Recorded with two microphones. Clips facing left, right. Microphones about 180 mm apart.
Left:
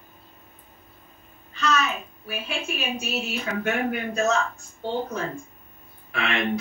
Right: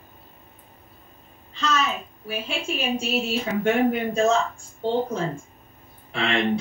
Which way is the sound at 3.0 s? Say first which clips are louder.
Right 4 dB; 30° right (ahead or behind).